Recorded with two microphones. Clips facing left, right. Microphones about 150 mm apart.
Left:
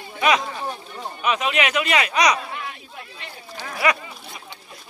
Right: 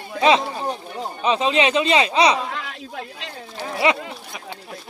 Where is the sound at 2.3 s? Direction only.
90° right.